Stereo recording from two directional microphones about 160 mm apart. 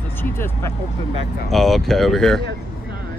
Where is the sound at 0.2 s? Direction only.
15° left (ahead or behind).